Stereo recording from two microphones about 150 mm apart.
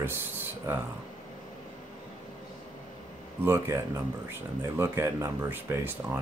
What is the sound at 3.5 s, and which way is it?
Speech, 20° right (ahead or behind).